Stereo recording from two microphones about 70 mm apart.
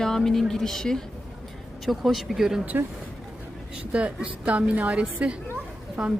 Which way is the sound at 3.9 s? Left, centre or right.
Centre.